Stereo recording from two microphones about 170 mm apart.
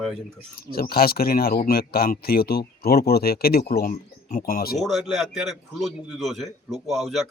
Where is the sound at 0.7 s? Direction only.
65° left (ahead or behind).